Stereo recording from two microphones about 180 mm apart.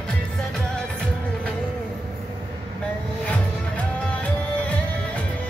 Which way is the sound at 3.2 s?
5° left (ahead or behind).